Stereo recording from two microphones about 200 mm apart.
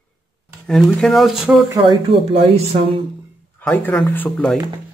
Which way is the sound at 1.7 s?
25° right (ahead or behind).